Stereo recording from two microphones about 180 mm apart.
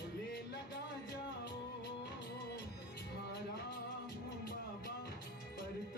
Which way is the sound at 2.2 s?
65° left (ahead or behind).